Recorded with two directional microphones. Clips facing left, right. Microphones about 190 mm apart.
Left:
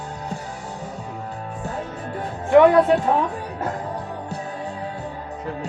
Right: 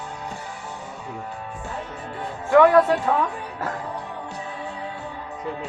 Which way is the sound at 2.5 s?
20° left (ahead or behind).